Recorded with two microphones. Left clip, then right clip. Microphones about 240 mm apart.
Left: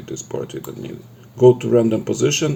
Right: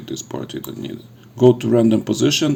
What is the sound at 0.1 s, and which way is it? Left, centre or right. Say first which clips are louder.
Speech: left 1 dB; right.